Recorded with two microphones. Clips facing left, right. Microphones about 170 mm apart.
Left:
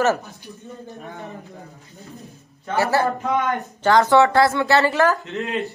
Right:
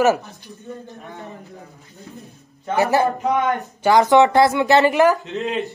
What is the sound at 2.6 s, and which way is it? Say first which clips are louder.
Speech: right 2 dB; 15° right (ahead or behind).